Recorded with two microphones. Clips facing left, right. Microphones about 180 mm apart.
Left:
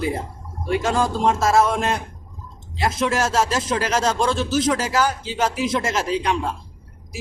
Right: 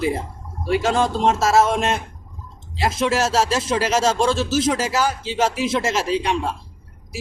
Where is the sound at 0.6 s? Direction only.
25° right (ahead or behind).